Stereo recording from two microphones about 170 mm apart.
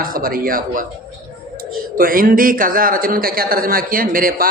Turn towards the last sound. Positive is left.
turn(degrees=-55)  # may be behind; listen again after turning